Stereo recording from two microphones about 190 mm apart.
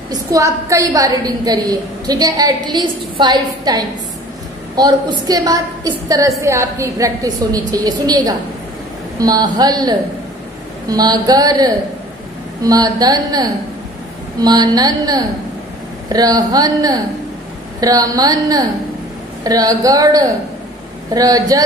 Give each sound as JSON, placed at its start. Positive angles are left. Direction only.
{"t": 0.1, "sound": "a woman's voice", "side_deg": -15}